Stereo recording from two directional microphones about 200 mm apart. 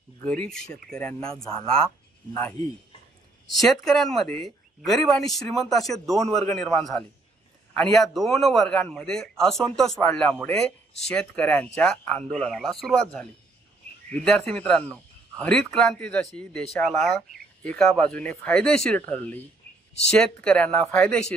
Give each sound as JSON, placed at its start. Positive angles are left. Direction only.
{"t": 0.2, "sound": "speech", "side_deg": 5}
{"t": 1.5, "sound": "speech", "side_deg": -30}
{"t": 3.4, "sound": "speech", "side_deg": 0}
{"t": 6.2, "sound": "a man's voice", "side_deg": -30}
{"t": 6.5, "sound": "speech", "side_deg": 0}
{"t": 17.6, "sound": "speech", "side_deg": 5}